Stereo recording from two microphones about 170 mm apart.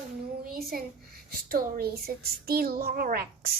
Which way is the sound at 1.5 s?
60° right (ahead or behind).